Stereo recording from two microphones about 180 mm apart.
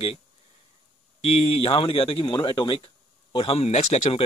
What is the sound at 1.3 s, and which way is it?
Speech, 30° left (ahead or behind).